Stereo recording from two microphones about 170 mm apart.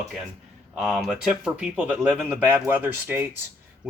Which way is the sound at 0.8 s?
Centre (ahead or behind).